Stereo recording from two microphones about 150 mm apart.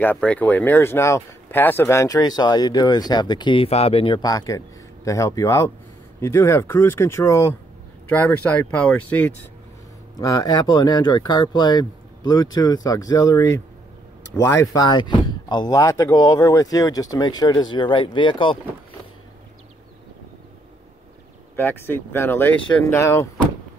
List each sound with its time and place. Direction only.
0.0 s speech: 10° left (ahead or behind)
10.1 s speech: 25° left (ahead or behind)
21.5 s speech: 15° left (ahead or behind)